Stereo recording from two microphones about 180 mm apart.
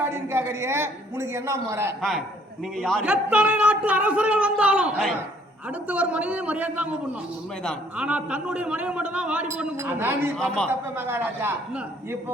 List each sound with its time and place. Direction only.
0.0 s speech: 15° right (ahead or behind)
2.0 s a man's voice: centre (ahead or behind)
7.9 s speech: 5° right (ahead or behind)
10.3 s a man's voice: 5° left (ahead or behind)
10.9 s speech: 10° right (ahead or behind)